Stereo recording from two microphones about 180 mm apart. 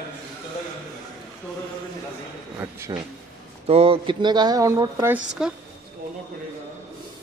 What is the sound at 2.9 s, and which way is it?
Speech, 25° right (ahead or behind).